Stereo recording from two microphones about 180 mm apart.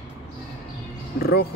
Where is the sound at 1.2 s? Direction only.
60° left (ahead or behind).